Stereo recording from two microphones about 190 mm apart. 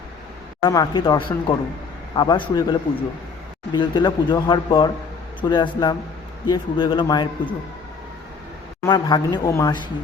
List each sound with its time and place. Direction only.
0.6 s speech: 20° left (ahead or behind)
8.9 s speech: 25° left (ahead or behind)